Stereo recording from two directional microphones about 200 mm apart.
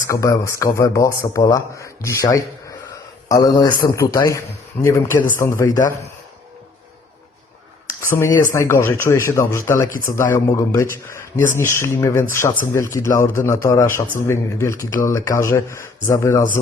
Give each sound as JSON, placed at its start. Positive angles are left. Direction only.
{"t": 0.1, "sound": "a man's voice", "side_deg": 15}
{"t": 8.4, "sound": "a man's voice", "side_deg": 15}
{"t": 13.1, "sound": "speech", "side_deg": 40}
{"t": 13.3, "sound": "a man's voice", "side_deg": 15}